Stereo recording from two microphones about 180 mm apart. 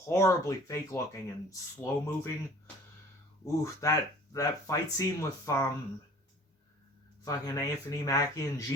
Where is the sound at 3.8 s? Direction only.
20° left (ahead or behind).